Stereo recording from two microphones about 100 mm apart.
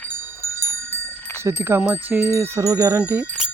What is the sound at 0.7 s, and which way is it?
Bicycle bell, 20° left (ahead or behind).